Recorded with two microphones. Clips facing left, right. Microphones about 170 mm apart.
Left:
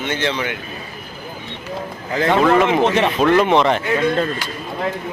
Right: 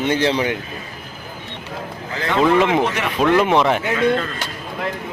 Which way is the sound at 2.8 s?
25° left (ahead or behind).